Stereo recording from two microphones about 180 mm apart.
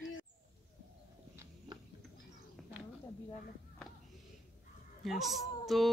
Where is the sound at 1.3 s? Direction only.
15° right (ahead or behind).